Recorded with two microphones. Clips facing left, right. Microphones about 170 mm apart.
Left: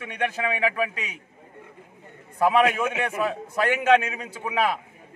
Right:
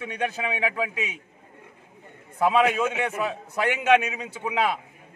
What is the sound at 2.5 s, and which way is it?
A man's voice, 20° right (ahead or behind).